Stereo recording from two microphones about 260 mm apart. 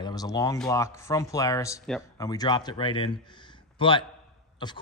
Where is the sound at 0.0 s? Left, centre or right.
Centre.